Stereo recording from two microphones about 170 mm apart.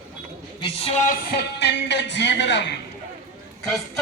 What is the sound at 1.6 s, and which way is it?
Speech, 90° left.